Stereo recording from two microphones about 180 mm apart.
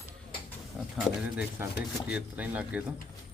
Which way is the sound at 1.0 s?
5° right (ahead or behind).